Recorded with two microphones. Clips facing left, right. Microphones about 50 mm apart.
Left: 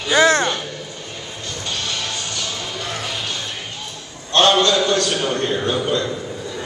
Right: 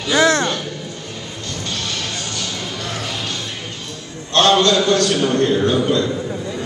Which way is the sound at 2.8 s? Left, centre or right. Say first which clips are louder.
Even; centre.